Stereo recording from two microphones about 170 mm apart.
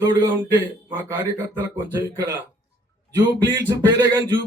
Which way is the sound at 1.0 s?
15° right (ahead or behind).